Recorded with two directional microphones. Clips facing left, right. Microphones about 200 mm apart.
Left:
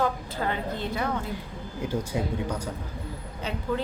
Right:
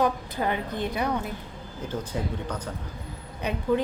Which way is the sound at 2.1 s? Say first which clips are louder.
Left 1 dB; 15° left (ahead or behind).